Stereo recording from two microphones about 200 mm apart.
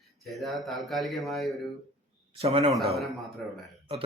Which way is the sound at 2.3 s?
30° right (ahead or behind).